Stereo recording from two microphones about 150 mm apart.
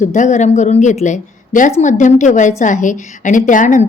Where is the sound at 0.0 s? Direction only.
55° left (ahead or behind).